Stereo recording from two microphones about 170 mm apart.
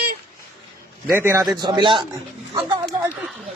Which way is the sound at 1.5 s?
25° right (ahead or behind).